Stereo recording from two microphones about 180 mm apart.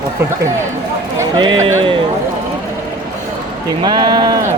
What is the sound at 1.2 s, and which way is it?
Speech, 25° right (ahead or behind).